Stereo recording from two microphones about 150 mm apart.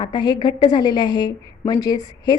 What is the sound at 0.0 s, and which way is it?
A woman's voice, 30° left (ahead or behind).